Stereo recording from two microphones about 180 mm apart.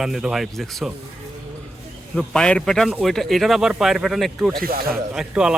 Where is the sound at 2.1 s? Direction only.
5° left (ahead or behind).